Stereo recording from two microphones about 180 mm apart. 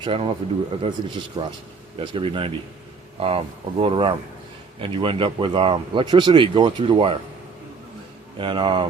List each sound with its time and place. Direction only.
0.0 s speech: 30° right (ahead or behind)
8.4 s speech: 25° right (ahead or behind)